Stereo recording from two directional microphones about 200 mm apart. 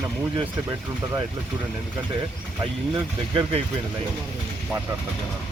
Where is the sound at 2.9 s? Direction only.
25° right (ahead or behind).